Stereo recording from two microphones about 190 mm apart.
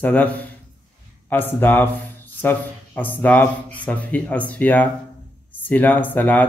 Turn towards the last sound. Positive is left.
turn(degrees=10)  # may be behind; listen again after turning